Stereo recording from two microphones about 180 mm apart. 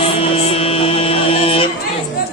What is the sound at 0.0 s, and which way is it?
Music, 30° left (ahead or behind).